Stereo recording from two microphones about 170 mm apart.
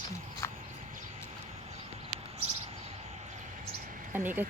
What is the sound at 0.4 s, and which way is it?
Horse, 15° left (ahead or behind).